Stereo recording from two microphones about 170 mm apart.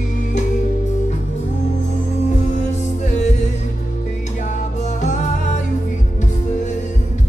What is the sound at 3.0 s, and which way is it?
Music, 45° left (ahead or behind).